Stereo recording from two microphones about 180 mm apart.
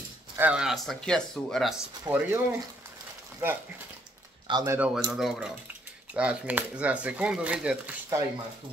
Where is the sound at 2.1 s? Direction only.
20° right (ahead or behind).